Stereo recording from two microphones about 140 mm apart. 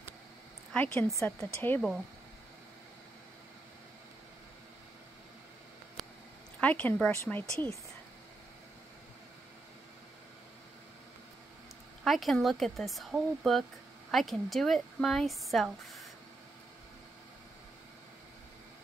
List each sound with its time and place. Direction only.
0.7 s speech: 20° left (ahead or behind)
6.6 s speech: 10° left (ahead or behind)
12.0 s speech: centre (ahead or behind)